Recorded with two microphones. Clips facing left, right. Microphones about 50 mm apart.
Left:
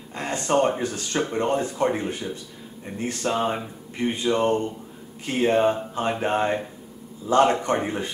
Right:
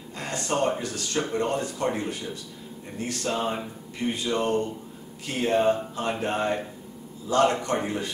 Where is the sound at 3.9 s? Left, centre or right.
Left.